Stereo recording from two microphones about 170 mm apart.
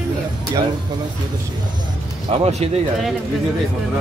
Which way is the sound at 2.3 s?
40° right (ahead or behind).